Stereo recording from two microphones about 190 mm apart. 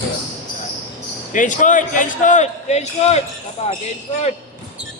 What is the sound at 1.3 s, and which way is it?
A man's voice, 45° left (ahead or behind).